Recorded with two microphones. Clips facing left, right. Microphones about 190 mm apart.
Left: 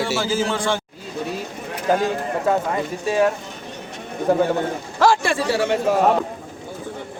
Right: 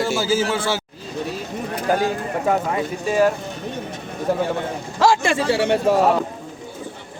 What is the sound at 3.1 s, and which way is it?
Speech, centre (ahead or behind).